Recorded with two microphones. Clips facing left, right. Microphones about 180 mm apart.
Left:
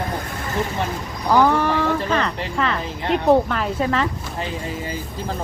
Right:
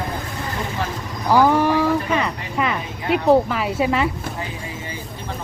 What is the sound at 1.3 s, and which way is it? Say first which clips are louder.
A woman's voice: right 1 dB; 10° right (ahead or behind).